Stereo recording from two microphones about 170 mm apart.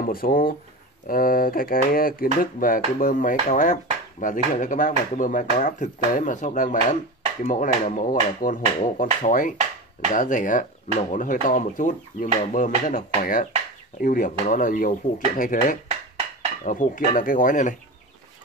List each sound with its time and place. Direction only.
0.0 s speech: 55° left (ahead or behind)